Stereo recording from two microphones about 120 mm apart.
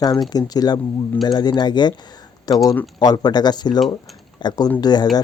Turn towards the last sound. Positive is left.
turn(degrees=35)  # may be behind; listen again after turning